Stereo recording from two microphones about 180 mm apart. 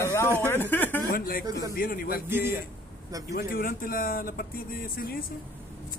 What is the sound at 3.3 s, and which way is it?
Speech, 50° left (ahead or behind).